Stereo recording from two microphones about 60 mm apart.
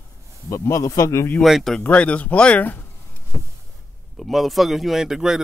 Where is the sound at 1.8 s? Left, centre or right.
Left.